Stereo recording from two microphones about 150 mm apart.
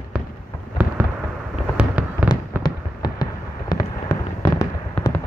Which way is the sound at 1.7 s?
10° right (ahead or behind).